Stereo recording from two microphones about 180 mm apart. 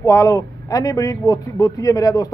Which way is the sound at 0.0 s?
15° left (ahead or behind).